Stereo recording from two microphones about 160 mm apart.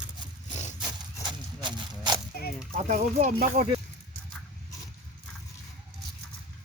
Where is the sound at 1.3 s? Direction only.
30° right (ahead or behind).